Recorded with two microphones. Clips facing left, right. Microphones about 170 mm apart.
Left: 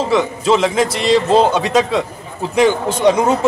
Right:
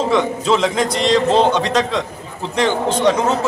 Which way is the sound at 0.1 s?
5° left (ahead or behind).